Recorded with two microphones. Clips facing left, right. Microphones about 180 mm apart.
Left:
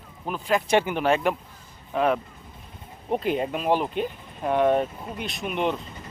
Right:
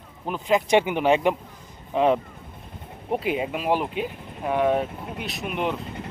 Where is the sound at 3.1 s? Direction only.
5° right (ahead or behind).